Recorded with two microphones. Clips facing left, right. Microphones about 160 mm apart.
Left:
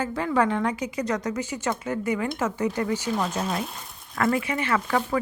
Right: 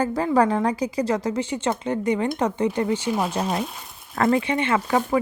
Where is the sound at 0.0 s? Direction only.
40° right (ahead or behind).